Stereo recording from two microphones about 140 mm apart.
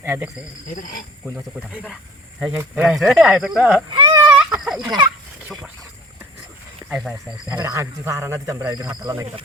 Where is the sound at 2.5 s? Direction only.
15° right (ahead or behind).